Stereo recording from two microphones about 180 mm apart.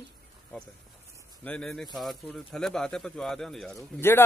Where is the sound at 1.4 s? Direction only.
5° left (ahead or behind).